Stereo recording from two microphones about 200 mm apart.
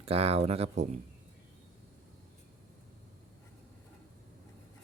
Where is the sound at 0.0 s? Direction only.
30° right (ahead or behind).